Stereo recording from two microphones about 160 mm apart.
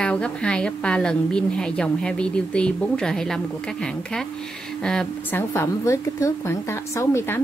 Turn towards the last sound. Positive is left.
turn(degrees=15)  # may be behind; listen again after turning